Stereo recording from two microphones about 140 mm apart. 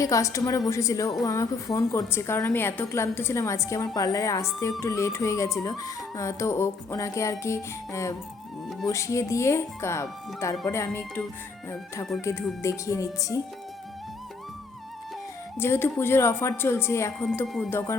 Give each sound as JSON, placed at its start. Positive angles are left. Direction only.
{"t": 0.0, "sound": "a woman's voice", "side_deg": 25}
{"t": 12.2, "sound": "a woman's voice", "side_deg": 20}
{"t": 15.5, "sound": "speech", "side_deg": 15}